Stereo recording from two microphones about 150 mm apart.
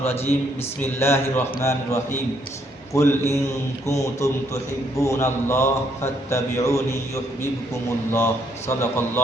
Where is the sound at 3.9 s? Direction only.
20° left (ahead or behind).